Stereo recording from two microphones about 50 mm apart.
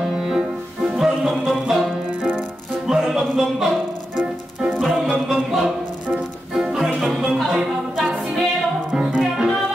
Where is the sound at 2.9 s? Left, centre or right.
Centre.